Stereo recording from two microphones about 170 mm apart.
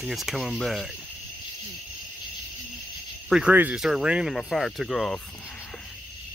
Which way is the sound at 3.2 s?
5° right (ahead or behind).